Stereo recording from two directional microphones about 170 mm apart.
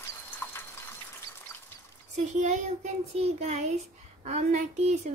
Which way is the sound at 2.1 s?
45° right (ahead or behind).